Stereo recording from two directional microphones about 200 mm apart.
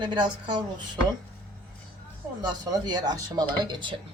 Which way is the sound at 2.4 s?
20° right (ahead or behind).